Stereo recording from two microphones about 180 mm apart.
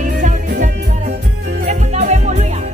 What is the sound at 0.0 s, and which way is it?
Music, 45° right (ahead or behind).